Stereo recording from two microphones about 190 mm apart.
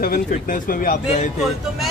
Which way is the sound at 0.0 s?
50° left (ahead or behind).